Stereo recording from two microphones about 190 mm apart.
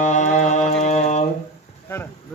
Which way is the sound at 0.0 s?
40° left (ahead or behind).